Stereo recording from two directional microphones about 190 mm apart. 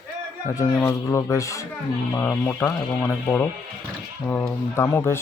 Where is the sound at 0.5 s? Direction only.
15° left (ahead or behind).